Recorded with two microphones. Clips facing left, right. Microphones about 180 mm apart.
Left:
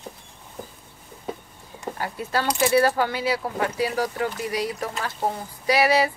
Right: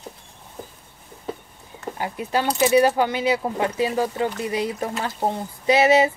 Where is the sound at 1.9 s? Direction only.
15° right (ahead or behind).